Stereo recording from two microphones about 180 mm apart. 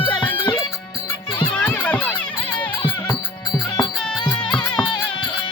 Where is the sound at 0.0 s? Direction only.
25° left (ahead or behind).